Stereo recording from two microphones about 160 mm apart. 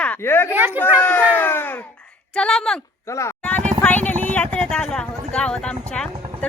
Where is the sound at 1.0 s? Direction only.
10° left (ahead or behind).